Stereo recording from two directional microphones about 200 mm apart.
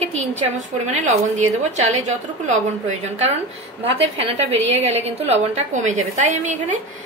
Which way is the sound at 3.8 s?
30° right (ahead or behind).